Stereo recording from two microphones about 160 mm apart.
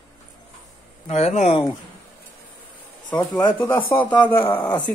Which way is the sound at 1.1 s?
45° left (ahead or behind).